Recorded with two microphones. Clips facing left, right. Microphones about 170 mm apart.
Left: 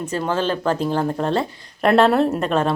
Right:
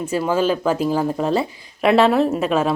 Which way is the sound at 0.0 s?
10° right (ahead or behind).